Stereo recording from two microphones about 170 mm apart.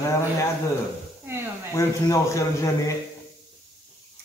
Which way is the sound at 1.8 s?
15° left (ahead or behind).